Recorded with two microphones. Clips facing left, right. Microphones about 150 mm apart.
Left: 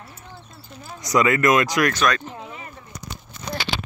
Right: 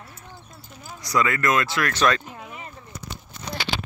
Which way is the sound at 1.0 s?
20° left (ahead or behind).